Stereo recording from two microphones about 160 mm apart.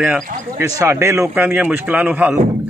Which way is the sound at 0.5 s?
20° right (ahead or behind).